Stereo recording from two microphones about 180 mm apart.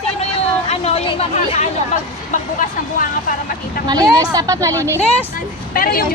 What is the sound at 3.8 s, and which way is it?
Speech, 20° right (ahead or behind).